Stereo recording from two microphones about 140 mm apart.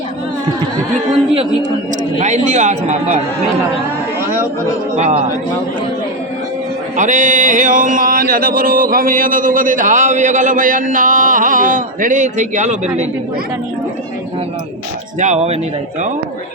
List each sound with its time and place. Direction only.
2.1 s a man's voice: 60° right (ahead or behind)
4.9 s speech: 50° right (ahead or behind)
6.9 s a sound: 65° right (ahead or behind)
15.2 s speech: 55° right (ahead or behind)